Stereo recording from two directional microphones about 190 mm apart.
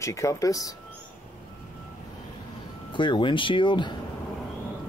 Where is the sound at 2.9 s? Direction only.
25° left (ahead or behind).